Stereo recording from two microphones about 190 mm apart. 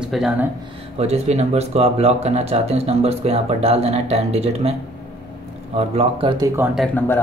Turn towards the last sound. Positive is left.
turn(degrees=10)  # may be behind; listen again after turning